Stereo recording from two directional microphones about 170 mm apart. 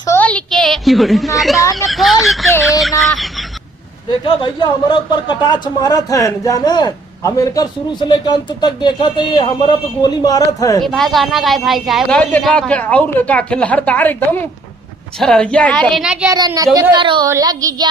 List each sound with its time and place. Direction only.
0.1 s a sound: 10° left (ahead or behind)
1.4 s speech: centre (ahead or behind)
1.9 s a sound: centre (ahead or behind)
4.2 s speech: 30° left (ahead or behind)
10.8 s speech: centre (ahead or behind)
16.7 s child singing: 30° right (ahead or behind)